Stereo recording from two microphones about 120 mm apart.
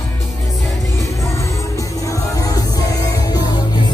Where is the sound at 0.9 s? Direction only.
25° left (ahead or behind).